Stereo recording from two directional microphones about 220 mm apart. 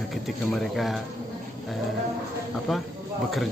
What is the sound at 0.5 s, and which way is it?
Speech, centre (ahead or behind).